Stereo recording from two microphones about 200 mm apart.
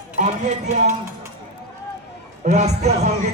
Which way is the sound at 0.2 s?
35° right (ahead or behind).